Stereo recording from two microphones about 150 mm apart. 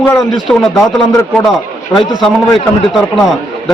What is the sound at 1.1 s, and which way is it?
Speech, 15° left (ahead or behind).